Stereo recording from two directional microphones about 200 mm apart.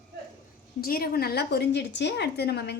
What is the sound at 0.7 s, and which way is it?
A woman's voice, 50° left (ahead or behind).